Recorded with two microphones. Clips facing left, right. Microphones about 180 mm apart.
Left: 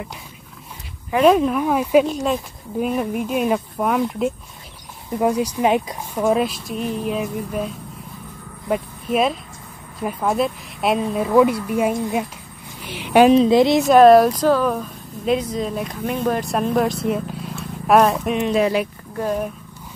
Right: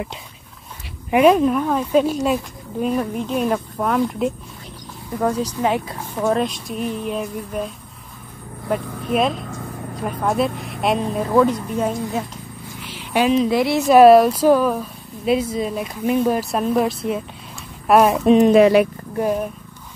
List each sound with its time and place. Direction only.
1.3 s speech: centre (ahead or behind)
12.9 s a sound: 60° left (ahead or behind)
13.3 s a woman's voice: 25° left (ahead or behind)
13.8 s speech: 5° right (ahead or behind)
18.2 s speech: 35° right (ahead or behind)
18.5 s speech: 65° right (ahead or behind)